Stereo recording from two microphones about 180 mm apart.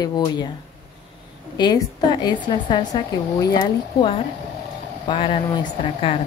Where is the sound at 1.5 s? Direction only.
25° left (ahead or behind).